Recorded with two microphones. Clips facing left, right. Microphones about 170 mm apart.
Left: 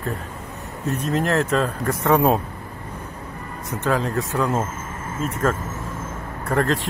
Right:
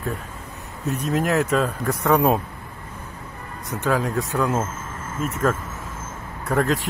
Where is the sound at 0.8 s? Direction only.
Centre (ahead or behind).